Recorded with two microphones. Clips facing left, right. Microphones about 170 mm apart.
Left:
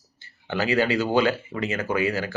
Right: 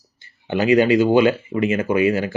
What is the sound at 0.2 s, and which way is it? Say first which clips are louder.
A man's voice: right 6 dB; 15° right (ahead or behind).